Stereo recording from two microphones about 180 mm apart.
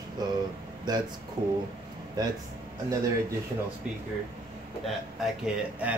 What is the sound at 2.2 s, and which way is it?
Speech, 20° right (ahead or behind).